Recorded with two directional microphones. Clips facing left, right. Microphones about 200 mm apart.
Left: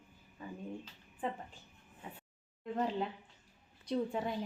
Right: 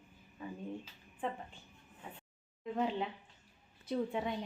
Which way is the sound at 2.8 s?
Centre (ahead or behind).